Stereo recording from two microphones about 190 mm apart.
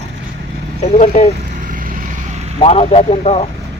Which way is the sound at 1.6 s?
45° right (ahead or behind).